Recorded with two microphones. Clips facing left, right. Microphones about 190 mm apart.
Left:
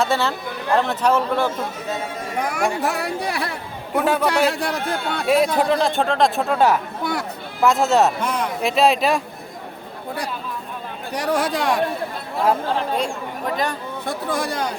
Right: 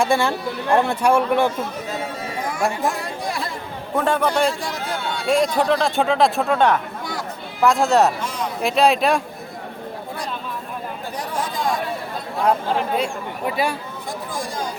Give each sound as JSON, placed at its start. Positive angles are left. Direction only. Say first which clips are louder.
{"t": 0.0, "sound": "speech", "louder": "right 2 dB", "side_deg": -15}
{"t": 2.8, "sound": "speech", "louder": "left 1 dB", "side_deg": 70}
{"t": 3.9, "sound": "a man's voice", "louder": "even", "side_deg": 5}
{"t": 4.4, "sound": "speech", "louder": "left 2 dB", "side_deg": 65}
{"t": 5.3, "sound": "speech", "louder": "left 1 dB", "side_deg": 5}
{"t": 7.0, "sound": "a sound", "louder": "left 5 dB", "side_deg": 65}
{"t": 7.6, "sound": "speech", "louder": "even", "side_deg": 0}
{"t": 8.2, "sound": "a sound", "louder": "left 4 dB", "side_deg": 60}
{"t": 8.6, "sound": "speech", "louder": "right 1 dB", "side_deg": 0}
{"t": 11.1, "sound": "speech", "louder": "left 7 dB", "side_deg": 75}
{"t": 13.0, "sound": "speech", "louder": "even", "side_deg": -10}
{"t": 14.1, "sound": "speech", "louder": "left 5 dB", "side_deg": 70}